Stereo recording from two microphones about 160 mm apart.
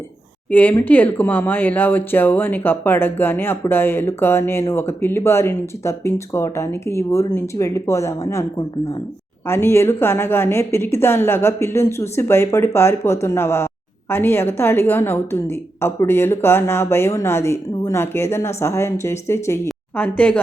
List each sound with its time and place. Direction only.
0.5 s speech: 10° left (ahead or behind)